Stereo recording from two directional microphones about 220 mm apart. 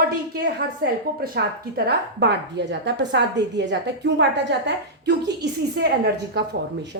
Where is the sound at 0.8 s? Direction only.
45° right (ahead or behind).